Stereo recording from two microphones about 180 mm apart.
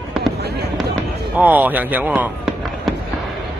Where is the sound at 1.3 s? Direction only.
10° right (ahead or behind).